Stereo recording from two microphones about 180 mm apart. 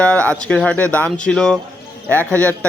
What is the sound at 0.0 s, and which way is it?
Speech, 5° left (ahead or behind).